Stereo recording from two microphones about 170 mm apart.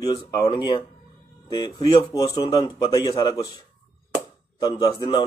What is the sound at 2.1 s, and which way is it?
Speech, 25° left (ahead or behind).